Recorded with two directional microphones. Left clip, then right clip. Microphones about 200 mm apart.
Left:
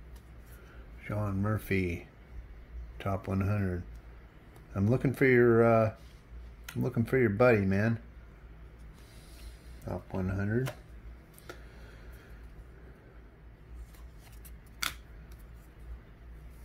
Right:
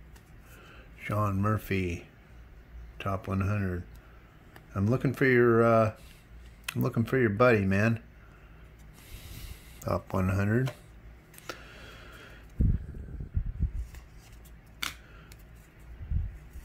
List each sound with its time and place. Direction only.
1.0 s speech: 25° right (ahead or behind)
1.6 s speech: 10° right (ahead or behind)
6.6 s speech: 25° right (ahead or behind)
9.8 s speech: 35° right (ahead or behind)